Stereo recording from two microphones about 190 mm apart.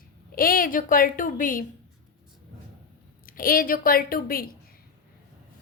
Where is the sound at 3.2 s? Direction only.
50° left (ahead or behind).